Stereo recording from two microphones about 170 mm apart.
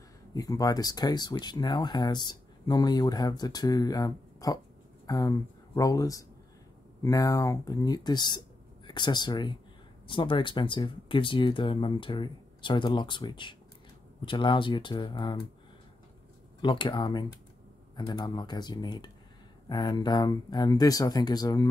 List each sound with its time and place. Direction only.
0.3 s speech: 20° left (ahead or behind)
16.6 s speech: 30° left (ahead or behind)